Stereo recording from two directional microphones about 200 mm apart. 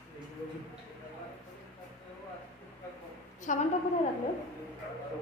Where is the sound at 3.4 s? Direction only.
40° left (ahead or behind).